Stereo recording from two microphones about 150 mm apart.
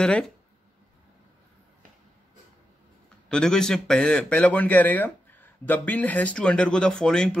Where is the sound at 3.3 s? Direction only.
5° left (ahead or behind).